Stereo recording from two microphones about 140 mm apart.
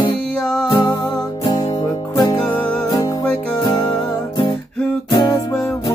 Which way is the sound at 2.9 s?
25° left (ahead or behind).